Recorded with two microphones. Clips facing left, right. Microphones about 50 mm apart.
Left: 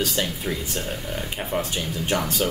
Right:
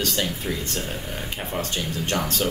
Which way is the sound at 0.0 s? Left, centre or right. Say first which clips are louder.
Left 1 dB; centre.